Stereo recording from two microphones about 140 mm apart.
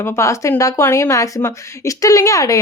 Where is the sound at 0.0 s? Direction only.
20° left (ahead or behind).